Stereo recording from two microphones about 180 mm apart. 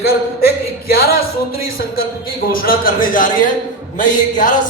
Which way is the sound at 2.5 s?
55° left (ahead or behind).